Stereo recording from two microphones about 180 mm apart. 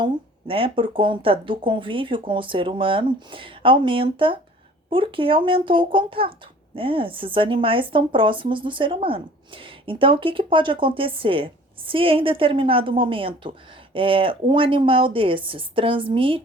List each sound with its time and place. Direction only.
0.0 s a woman's voice: 30° right (ahead or behind)